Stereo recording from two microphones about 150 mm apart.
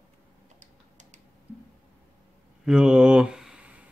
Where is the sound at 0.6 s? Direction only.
50° right (ahead or behind).